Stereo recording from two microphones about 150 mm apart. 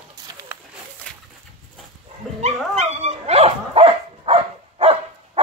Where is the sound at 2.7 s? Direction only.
45° right (ahead or behind).